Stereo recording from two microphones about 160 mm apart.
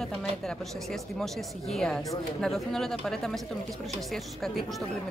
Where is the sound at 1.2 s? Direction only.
5° left (ahead or behind).